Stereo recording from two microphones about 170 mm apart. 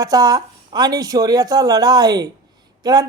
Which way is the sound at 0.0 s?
20° right (ahead or behind).